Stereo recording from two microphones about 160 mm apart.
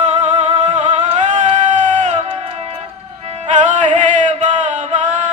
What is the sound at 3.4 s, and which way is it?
Music, 50° right (ahead or behind).